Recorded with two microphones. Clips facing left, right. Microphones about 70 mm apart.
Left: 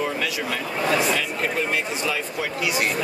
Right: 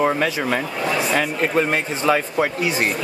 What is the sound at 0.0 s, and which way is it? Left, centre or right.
Speech, right.